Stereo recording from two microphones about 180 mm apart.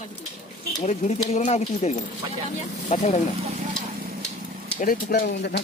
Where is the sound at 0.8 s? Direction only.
40° left (ahead or behind).